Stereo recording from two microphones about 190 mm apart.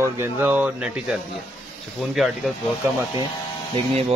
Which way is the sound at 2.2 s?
Centre (ahead or behind).